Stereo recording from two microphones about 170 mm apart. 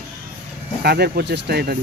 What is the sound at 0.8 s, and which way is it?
Speech, 70° right (ahead or behind).